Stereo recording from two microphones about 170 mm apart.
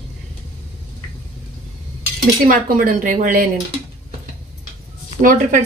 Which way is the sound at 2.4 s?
55° right (ahead or behind).